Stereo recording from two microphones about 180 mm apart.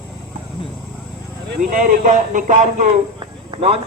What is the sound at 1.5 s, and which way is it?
Speech, 50° right (ahead or behind).